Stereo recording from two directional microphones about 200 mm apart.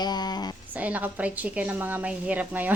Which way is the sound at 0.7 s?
5° right (ahead or behind).